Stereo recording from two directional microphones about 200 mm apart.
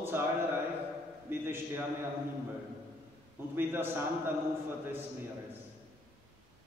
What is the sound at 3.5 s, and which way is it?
Speech, 10° right (ahead or behind).